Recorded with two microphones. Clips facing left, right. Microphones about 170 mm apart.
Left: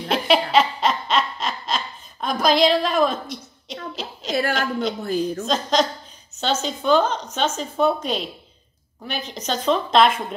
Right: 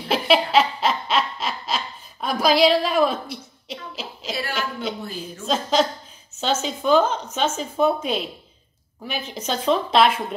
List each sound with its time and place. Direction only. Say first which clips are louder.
0.1 s snicker: even; 5° right (ahead or behind)
3.9 s a sound: left 6 dB; 5° right (ahead or behind)
4.4 s a woman's voice: left 6 dB; 45° left (ahead or behind)
5.5 s a woman's voice: right 3 dB; 5° right (ahead or behind)